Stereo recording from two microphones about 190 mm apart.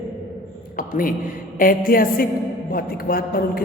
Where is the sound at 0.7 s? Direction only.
45° left (ahead or behind).